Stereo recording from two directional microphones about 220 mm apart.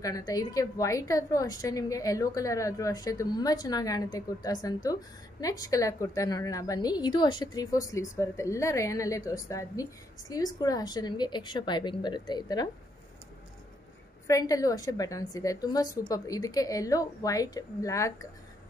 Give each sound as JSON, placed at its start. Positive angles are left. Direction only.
{"t": 0.0, "sound": "a woman's voice", "side_deg": 15}
{"t": 14.2, "sound": "a woman's voice", "side_deg": 15}